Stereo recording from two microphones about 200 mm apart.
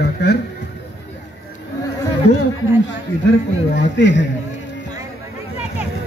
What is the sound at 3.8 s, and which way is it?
Speech, 60° left (ahead or behind).